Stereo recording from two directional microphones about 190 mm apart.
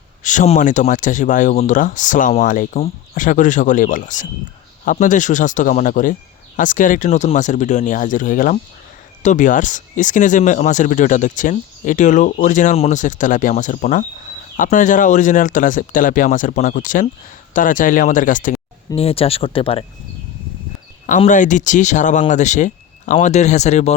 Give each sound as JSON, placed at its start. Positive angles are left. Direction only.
{"t": 0.2, "sound": "speech", "side_deg": 40}
{"t": 18.9, "sound": "speech", "side_deg": 30}
{"t": 21.2, "sound": "speech", "side_deg": 40}